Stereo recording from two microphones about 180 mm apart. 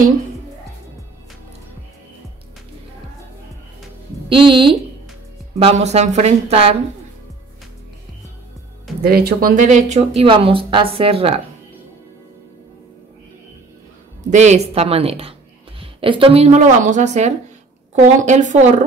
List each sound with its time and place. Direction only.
4.3 s a woman's voice: 30° right (ahead or behind)
9.0 s speech: 60° right (ahead or behind); by 10.2 s 40° right (ahead or behind)
10.2 s speech: 30° right (ahead or behind)
14.3 s speech: 40° right (ahead or behind)